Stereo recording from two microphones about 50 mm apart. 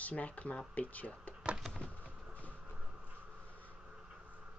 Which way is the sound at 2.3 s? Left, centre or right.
Right.